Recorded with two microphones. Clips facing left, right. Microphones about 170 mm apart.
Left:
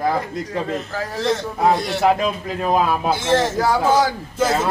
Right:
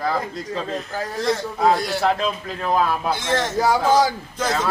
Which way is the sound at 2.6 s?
15° left (ahead or behind).